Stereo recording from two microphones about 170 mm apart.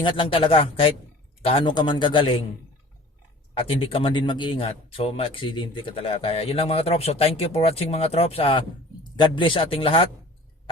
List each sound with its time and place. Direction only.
0.0 s a man's voice: 30° left (ahead or behind)
3.7 s speech: 30° left (ahead or behind)